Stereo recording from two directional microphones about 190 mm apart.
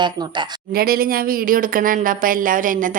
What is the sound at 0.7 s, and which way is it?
Speech, 50° right (ahead or behind).